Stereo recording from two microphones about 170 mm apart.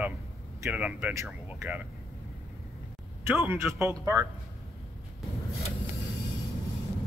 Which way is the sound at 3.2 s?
10° right (ahead or behind).